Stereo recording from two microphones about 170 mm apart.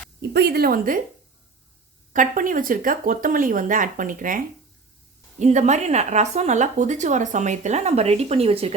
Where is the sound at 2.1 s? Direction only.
50° right (ahead or behind).